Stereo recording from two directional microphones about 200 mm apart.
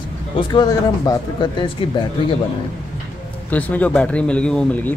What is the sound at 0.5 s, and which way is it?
Speech, 20° left (ahead or behind).